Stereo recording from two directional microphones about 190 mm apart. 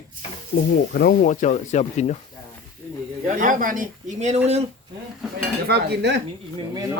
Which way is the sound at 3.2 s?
45° right (ahead or behind).